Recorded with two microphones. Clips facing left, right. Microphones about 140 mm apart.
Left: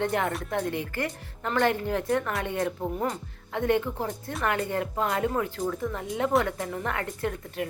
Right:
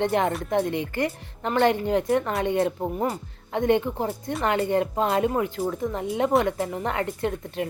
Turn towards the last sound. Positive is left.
turn(degrees=-25)  # may be behind; listen again after turning